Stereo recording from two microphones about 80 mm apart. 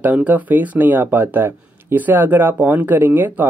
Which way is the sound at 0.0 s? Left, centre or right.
Centre.